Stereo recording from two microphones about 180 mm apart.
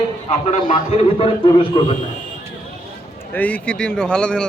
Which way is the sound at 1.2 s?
30° left (ahead or behind).